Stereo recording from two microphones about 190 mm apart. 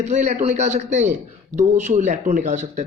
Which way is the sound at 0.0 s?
35° right (ahead or behind).